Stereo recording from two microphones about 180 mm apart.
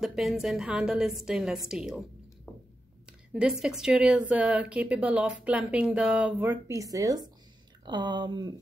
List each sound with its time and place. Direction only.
0.0 s a woman's voice: centre (ahead or behind)
2.5 s a sound: 10° left (ahead or behind)
3.3 s a woman's voice: 5° right (ahead or behind); by 8.5 s 25° right (ahead or behind)